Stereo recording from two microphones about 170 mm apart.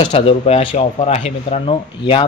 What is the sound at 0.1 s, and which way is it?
Speech, 35° left (ahead or behind).